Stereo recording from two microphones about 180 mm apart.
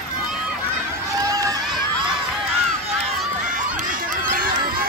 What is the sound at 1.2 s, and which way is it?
Run, 20° right (ahead or behind).